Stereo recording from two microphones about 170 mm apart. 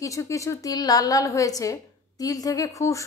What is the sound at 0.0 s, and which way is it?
A woman's voice, 20° left (ahead or behind).